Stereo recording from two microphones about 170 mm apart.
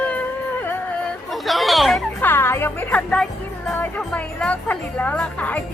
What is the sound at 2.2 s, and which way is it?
Speech, 15° left (ahead or behind).